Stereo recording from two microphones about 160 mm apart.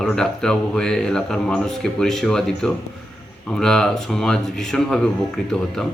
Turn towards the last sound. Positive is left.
turn(degrees=5)  # may be behind; listen again after turning